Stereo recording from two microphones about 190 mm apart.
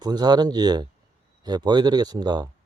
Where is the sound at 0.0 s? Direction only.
20° right (ahead or behind).